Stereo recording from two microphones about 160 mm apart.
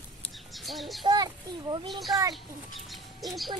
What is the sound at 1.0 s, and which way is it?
Speech, 25° right (ahead or behind).